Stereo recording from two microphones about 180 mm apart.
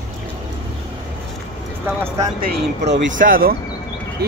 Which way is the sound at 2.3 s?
50° right (ahead or behind).